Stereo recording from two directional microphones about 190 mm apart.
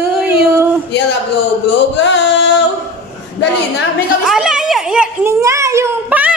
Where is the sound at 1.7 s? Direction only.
70° left (ahead or behind).